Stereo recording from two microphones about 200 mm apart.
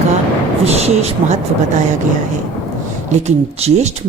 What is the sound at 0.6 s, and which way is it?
Speech, 30° right (ahead or behind).